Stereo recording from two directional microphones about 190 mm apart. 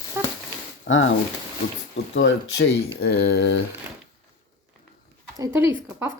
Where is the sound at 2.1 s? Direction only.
75° left (ahead or behind).